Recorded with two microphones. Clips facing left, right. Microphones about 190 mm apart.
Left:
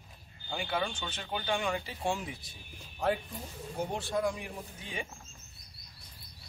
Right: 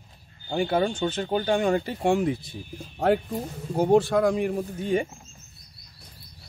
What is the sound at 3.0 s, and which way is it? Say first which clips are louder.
Speech: right 9 dB; 70° right (ahead or behind).